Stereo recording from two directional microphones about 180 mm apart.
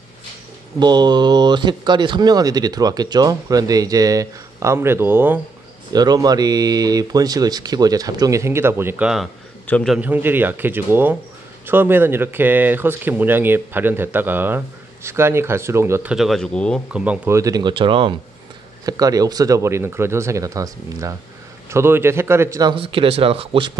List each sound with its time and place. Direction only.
0.7 s speech: 25° right (ahead or behind)
5.9 s speech: 20° right (ahead or behind); by 9.3 s 5° right (ahead or behind)
9.7 s a man's voice: 5° left (ahead or behind)
9.9 s speech: 10° right (ahead or behind)
16.9 s speech: 5° right (ahead or behind); by 23.7 s 30° right (ahead or behind)